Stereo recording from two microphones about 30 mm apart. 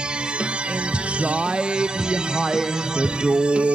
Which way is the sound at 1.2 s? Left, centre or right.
Right.